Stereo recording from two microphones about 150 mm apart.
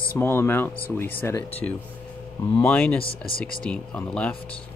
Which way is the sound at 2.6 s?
10° left (ahead or behind).